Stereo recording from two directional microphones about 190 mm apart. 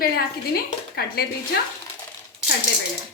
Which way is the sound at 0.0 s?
50° left (ahead or behind).